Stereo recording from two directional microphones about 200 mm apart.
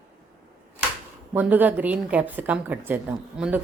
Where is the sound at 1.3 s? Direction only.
10° right (ahead or behind).